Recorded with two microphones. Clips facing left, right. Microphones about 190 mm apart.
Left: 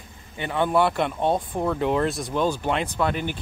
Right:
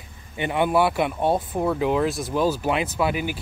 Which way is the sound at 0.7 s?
5° right (ahead or behind).